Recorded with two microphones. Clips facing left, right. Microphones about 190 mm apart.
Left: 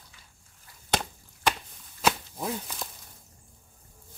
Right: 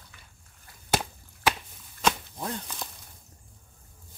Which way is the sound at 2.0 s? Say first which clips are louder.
Left 1 dB; 5° left (ahead or behind).